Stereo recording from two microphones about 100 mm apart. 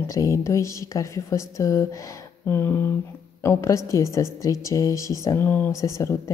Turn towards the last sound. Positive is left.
turn(degrees=30)  # may be behind; listen again after turning